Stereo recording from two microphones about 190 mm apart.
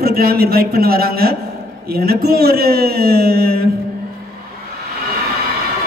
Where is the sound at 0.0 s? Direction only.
55° right (ahead or behind).